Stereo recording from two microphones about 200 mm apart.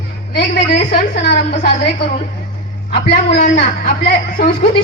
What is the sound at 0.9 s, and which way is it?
Speech, 50° left (ahead or behind).